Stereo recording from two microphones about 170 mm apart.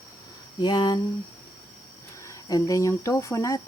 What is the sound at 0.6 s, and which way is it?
Speech, 25° left (ahead or behind).